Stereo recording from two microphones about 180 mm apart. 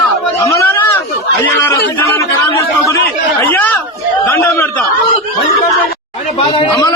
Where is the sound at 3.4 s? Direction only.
10° left (ahead or behind).